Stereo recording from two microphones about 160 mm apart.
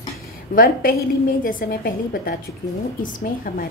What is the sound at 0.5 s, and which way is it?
A woman's voice, 65° left (ahead or behind).